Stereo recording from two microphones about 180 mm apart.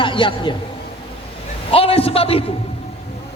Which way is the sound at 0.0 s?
30° left (ahead or behind).